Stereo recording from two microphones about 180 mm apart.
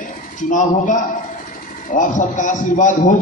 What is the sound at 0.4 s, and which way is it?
A man's voice, 45° left (ahead or behind).